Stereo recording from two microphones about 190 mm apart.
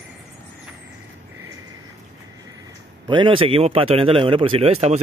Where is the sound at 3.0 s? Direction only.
25° right (ahead or behind).